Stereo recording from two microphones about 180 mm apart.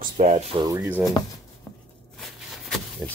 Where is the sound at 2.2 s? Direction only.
Centre (ahead or behind).